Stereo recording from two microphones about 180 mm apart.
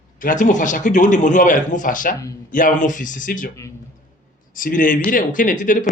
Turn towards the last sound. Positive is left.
turn(degrees=45)  # may be behind; listen again after turning